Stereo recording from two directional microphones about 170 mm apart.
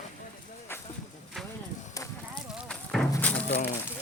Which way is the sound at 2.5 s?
Centre (ahead or behind).